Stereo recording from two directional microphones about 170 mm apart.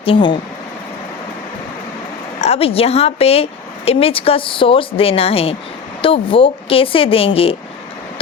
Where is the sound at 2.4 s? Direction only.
40° left (ahead or behind).